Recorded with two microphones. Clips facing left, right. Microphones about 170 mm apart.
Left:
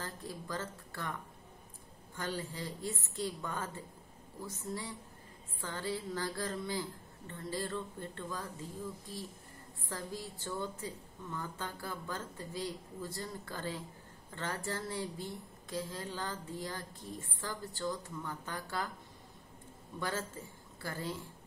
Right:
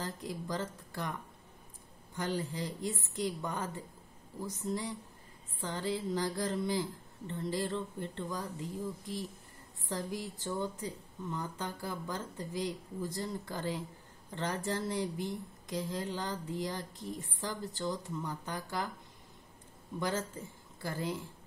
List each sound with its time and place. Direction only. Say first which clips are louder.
0.0 s speech: right 4 dB; 15° right (ahead or behind)
2.1 s speech: right 4 dB; 15° right (ahead or behind)
20.0 s speech: right 3 dB; 15° right (ahead or behind)